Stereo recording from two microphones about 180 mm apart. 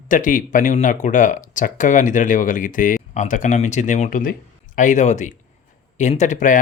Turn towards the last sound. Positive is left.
turn(degrees=45)  # may be behind; listen again after turning